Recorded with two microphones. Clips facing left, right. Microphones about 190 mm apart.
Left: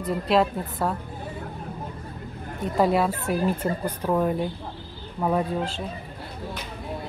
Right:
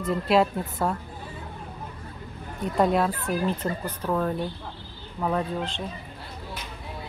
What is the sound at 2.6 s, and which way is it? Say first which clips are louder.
A woman's voice: left 1 dB; 5° left (ahead or behind).